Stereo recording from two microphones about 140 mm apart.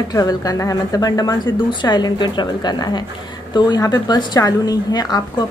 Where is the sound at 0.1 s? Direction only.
25° left (ahead or behind).